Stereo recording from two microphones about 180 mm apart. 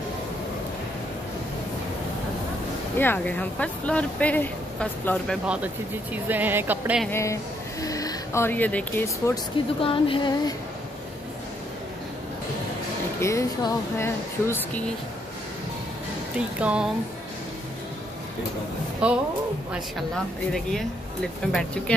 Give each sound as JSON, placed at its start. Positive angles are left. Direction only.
{"t": 3.0, "sound": "speech", "side_deg": 10}
{"t": 6.1, "sound": "speech", "side_deg": -10}
{"t": 7.1, "sound": "speech", "side_deg": 15}
{"t": 9.8, "sound": "a sound", "side_deg": 30}
{"t": 13.2, "sound": "speech", "side_deg": 15}
{"t": 16.3, "sound": "speech", "side_deg": -5}
{"t": 19.0, "sound": "speech", "side_deg": -5}
{"t": 21.5, "sound": "speech", "side_deg": 5}